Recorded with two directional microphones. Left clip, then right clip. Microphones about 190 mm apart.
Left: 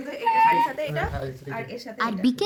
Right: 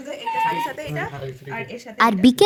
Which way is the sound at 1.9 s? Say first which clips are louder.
Right 9 dB; 35° right (ahead or behind).